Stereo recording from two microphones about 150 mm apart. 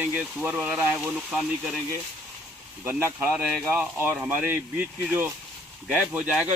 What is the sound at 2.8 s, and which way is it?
Speech, 15° right (ahead or behind).